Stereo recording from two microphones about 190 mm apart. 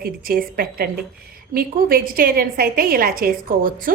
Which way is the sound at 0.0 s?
50° right (ahead or behind).